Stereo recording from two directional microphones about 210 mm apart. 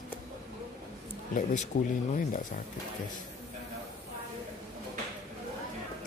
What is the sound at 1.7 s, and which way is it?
Speech, 35° left (ahead or behind).